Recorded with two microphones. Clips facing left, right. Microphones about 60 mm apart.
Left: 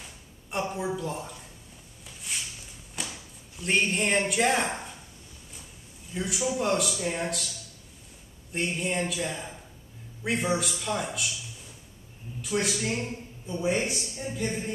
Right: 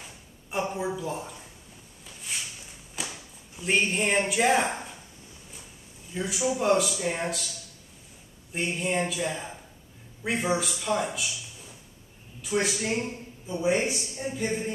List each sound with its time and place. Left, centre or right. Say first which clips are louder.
0.0 s a sound: right 1 dB; centre
6.1 s a man's voice: right 1 dB; centre
8.5 s a man's voice: right 1 dB; centre
12.4 s a man's voice: right 1 dB; centre